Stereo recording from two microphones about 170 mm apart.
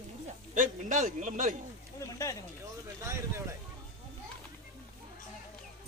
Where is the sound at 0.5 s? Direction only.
50° right (ahead or behind).